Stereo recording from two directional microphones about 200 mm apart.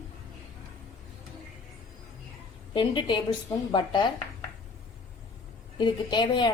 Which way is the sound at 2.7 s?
25° left (ahead or behind).